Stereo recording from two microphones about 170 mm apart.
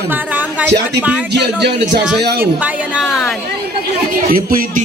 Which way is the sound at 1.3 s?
80° right.